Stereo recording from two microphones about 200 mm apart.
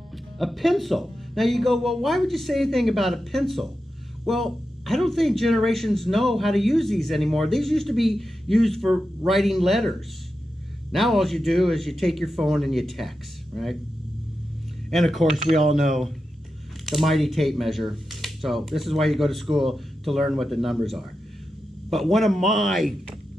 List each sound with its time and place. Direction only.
0.4 s speech: centre (ahead or behind)
14.9 s speech: centre (ahead or behind)